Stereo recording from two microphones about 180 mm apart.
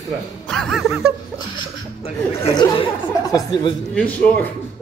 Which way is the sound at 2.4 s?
25° left (ahead or behind).